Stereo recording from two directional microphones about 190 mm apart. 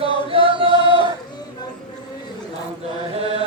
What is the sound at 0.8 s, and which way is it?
Chant, 25° left (ahead or behind).